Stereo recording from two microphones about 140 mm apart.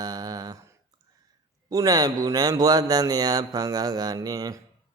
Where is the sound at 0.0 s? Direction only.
30° right (ahead or behind).